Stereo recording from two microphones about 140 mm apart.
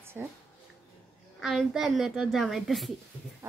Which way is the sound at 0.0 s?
15° right (ahead or behind).